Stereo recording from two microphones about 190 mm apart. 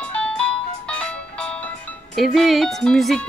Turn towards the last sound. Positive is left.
turn(degrees=0)  # may be behind; listen again after turning